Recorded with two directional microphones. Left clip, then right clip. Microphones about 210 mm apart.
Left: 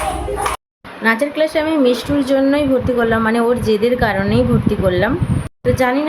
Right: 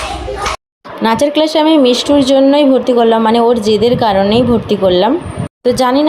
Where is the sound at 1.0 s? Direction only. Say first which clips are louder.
Right 4 dB; 30° right (ahead or behind).